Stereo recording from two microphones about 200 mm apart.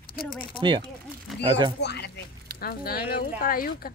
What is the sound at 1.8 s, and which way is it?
Speech, 55° left (ahead or behind).